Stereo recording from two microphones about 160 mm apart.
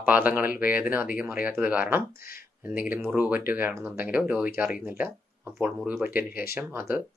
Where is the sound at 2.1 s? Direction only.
65° left (ahead or behind).